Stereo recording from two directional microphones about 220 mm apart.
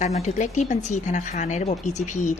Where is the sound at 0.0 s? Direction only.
30° left (ahead or behind).